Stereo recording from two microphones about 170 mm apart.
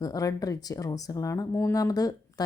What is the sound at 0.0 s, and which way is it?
Speech, 20° left (ahead or behind).